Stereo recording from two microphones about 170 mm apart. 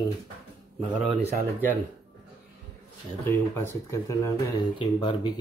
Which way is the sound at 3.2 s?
10° left (ahead or behind).